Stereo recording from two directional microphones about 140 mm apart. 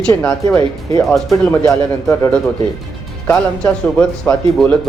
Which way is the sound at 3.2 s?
15° left (ahead or behind).